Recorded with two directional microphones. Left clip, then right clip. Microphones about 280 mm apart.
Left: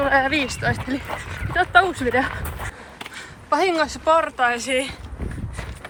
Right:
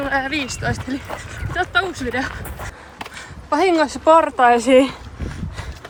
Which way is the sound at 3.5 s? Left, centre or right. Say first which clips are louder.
Right 3 dB; centre.